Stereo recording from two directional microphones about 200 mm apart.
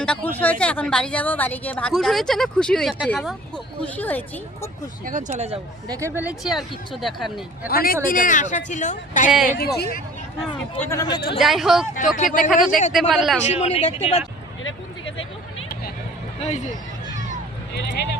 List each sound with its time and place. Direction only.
0.0 s a woman's voice: 5° left (ahead or behind)
5.0 s speech: 35° right (ahead or behind)
5.9 s a woman's voice: 15° right (ahead or behind)
7.7 s speech: 50° left (ahead or behind)
9.3 s a woman's voice: 5° right (ahead or behind)
9.6 s speech: 50° left (ahead or behind)
10.8 s speech: 15° left (ahead or behind)
11.3 s a woman's voice: centre (ahead or behind)
12.1 s speech: 40° left (ahead or behind)
12.9 s a woman's voice: centre (ahead or behind)
13.5 s speech: 30° left (ahead or behind)
14.6 s a sound: 75° left (ahead or behind)
17.7 s speech: 55° left (ahead or behind)